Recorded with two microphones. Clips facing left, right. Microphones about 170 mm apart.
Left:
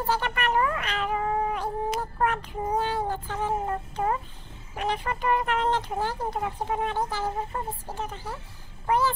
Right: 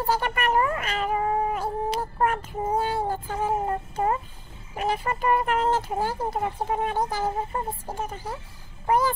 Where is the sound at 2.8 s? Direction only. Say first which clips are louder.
Right 1 dB; 10° right (ahead or behind).